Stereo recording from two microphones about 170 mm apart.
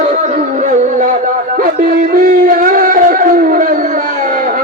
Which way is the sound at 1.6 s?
55° right (ahead or behind).